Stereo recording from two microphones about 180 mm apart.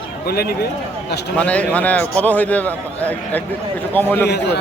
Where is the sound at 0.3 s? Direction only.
60° left (ahead or behind).